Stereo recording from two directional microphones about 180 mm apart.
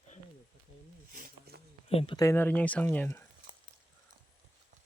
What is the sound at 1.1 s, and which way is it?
Speech, 55° right (ahead or behind).